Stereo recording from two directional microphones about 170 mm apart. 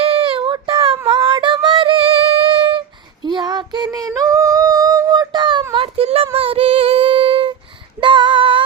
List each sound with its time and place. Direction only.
0.0 s child singing: 30° right (ahead or behind)
0.9 s female singing: 30° right (ahead or behind)
3.2 s child singing: 25° right (ahead or behind)
3.9 s a sound: 20° right (ahead or behind)
8.0 s female singing: 30° right (ahead or behind)